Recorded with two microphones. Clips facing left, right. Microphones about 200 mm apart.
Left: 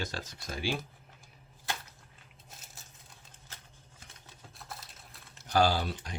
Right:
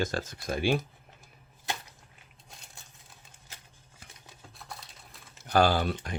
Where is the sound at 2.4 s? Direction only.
5° left (ahead or behind).